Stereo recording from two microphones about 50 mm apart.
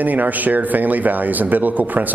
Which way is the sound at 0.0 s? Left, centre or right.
Right.